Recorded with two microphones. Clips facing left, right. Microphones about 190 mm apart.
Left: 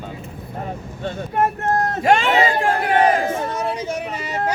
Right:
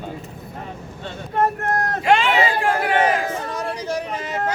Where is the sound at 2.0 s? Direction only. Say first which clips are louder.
Left 1 dB; 45° left (ahead or behind).